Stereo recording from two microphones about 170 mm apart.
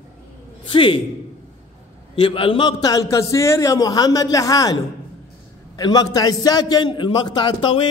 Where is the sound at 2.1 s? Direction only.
30° left (ahead or behind).